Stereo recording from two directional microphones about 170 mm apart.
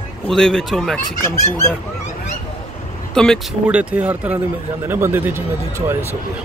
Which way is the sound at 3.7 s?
5° right (ahead or behind).